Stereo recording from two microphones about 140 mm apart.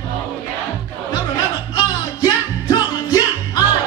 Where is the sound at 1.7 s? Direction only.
30° left (ahead or behind).